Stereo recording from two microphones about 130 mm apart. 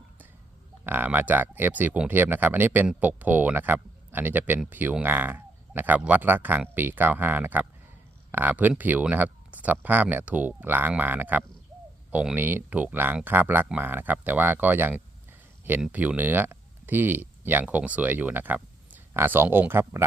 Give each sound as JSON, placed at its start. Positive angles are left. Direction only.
{"t": 0.9, "sound": "speech", "side_deg": -15}